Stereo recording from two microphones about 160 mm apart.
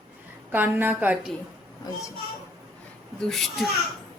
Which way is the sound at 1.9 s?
25° left (ahead or behind).